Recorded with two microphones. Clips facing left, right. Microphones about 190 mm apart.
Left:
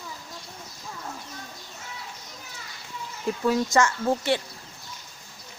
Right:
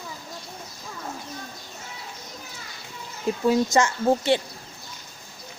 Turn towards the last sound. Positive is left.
turn(degrees=-25)  # may be behind; listen again after turning